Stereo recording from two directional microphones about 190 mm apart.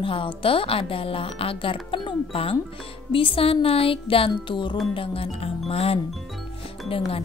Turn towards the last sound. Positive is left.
turn(degrees=30)  # may be behind; listen again after turning